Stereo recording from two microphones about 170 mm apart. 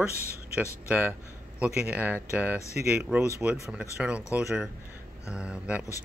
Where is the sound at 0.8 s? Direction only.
10° right (ahead or behind).